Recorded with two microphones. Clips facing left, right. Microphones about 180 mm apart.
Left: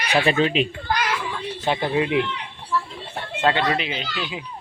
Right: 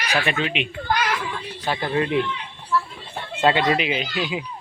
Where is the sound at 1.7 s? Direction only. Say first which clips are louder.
Left 1 dB; 20° left (ahead or behind).